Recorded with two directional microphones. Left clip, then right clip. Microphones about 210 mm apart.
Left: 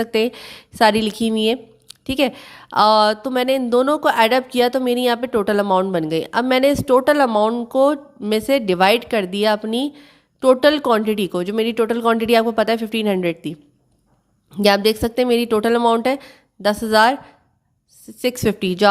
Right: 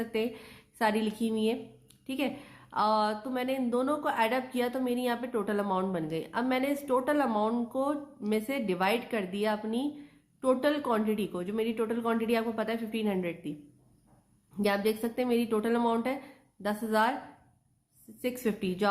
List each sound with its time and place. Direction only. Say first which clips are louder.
0.0 s speech: left 13 dB; 50° left (ahead or behind)
14.5 s speech: left 14 dB; 50° left (ahead or behind)
18.2 s speech: left 13 dB; 50° left (ahead or behind)